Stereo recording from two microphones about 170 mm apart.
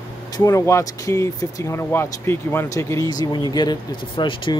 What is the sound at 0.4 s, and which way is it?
Speech, 15° left (ahead or behind).